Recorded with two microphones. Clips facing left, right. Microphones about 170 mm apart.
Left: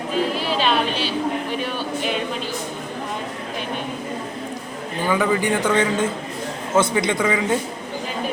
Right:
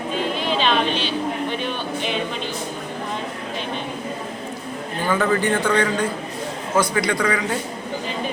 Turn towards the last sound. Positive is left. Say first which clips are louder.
# left 2 dB
turn(degrees=20)  # may be behind; listen again after turning